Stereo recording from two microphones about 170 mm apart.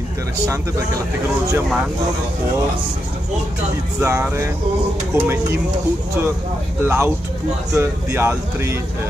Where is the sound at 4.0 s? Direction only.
15° right (ahead or behind).